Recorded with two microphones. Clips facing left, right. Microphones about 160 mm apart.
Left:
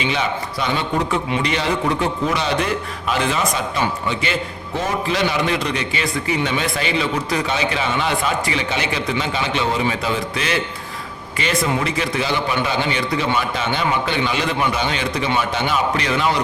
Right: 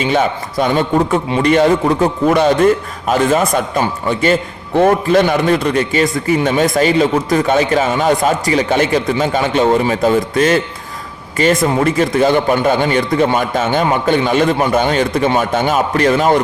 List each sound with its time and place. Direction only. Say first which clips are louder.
0.0 s a man's voice: right 7 dB; 45° right (ahead or behind)